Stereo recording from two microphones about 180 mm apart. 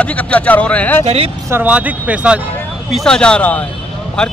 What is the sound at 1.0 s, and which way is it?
Speech, 35° right (ahead or behind).